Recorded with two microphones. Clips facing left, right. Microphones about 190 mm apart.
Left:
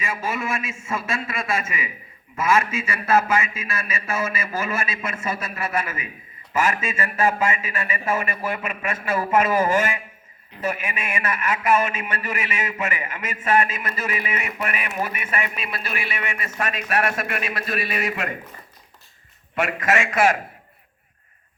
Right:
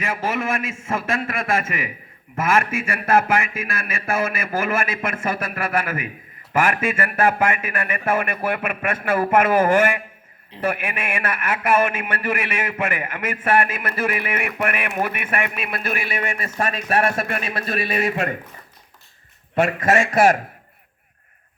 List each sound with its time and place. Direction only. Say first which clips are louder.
0.0 s a man's voice: right 3 dB; 55° right (ahead or behind); by 18.3 s 30° right (ahead or behind)
19.5 s a man's voice: right 4 dB; 30° right (ahead or behind)